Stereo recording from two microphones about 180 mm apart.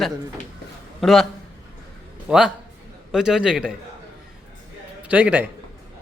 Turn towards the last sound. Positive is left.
turn(degrees=-10)  # may be behind; listen again after turning